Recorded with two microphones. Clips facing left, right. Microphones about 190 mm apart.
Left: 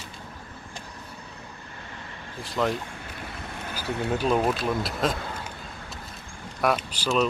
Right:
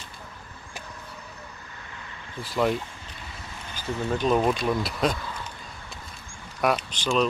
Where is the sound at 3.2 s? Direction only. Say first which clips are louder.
Left 4 dB; 55° left (ahead or behind).